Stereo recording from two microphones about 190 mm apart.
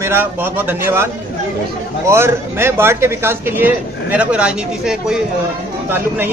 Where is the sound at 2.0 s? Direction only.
15° right (ahead or behind).